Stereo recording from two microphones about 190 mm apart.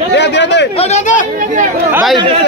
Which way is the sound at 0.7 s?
35° left (ahead or behind).